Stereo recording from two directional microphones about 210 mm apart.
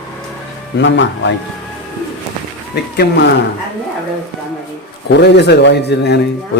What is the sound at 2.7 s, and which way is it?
Speech, 50° left (ahead or behind).